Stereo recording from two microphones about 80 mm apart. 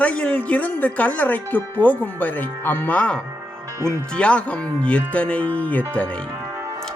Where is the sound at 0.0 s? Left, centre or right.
Centre.